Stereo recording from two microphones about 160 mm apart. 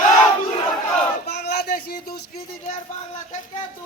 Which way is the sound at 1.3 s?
85° left.